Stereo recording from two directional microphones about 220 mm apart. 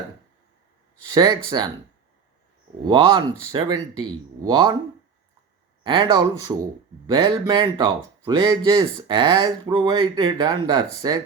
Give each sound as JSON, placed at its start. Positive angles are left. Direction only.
{"t": 1.1, "sound": "speech", "side_deg": -20}
{"t": 2.8, "sound": "speech", "side_deg": -20}
{"t": 5.8, "sound": "speech", "side_deg": -20}